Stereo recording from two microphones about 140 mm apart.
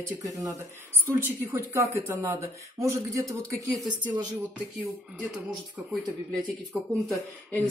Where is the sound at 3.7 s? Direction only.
35° right (ahead or behind).